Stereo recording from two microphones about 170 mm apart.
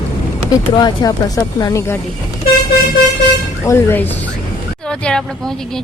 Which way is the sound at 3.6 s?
15° left (ahead or behind).